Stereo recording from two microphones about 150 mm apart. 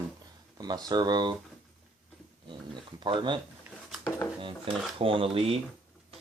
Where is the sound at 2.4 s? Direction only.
30° right (ahead or behind).